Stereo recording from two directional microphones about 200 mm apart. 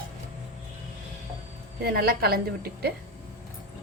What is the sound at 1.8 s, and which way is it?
A woman's voice, 50° right (ahead or behind).